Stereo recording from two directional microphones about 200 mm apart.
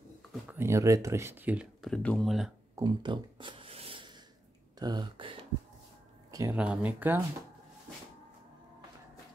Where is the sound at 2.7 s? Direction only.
20° right (ahead or behind).